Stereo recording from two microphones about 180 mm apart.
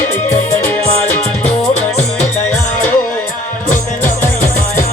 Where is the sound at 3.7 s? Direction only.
45° left (ahead or behind).